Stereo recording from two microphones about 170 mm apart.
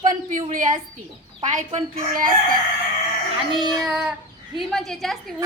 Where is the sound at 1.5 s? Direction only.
45° right (ahead or behind).